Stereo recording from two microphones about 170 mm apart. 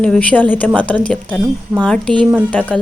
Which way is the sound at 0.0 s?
5° left (ahead or behind).